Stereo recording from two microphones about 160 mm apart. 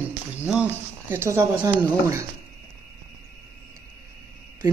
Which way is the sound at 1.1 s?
15° right (ahead or behind).